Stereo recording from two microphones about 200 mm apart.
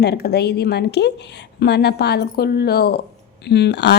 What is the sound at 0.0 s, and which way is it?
Speech, 55° left (ahead or behind).